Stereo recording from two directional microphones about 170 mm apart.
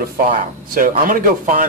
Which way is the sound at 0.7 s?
55° right (ahead or behind).